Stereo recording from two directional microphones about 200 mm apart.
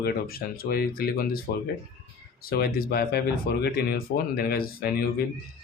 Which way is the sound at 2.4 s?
50° left (ahead or behind).